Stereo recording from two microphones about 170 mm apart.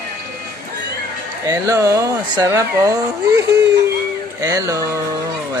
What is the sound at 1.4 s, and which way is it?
Speech, 20° right (ahead or behind).